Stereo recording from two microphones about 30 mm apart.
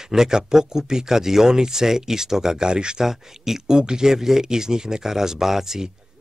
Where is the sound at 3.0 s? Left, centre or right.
Centre.